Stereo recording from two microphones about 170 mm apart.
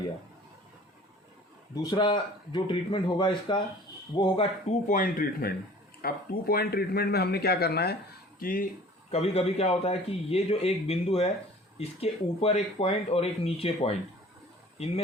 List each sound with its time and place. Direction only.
1.7 s a man's voice: 25° left (ahead or behind)
4.9 s speech: 50° left (ahead or behind); by 7.9 s 70° left (ahead or behind)
8.4 s speech: 60° left (ahead or behind)
9.0 s a man's voice: 35° left (ahead or behind)